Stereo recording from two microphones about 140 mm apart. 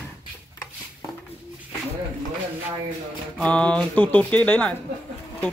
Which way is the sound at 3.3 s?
10° left (ahead or behind).